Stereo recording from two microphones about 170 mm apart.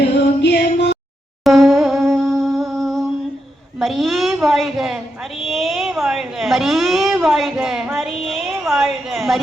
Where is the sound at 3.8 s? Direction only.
Centre (ahead or behind).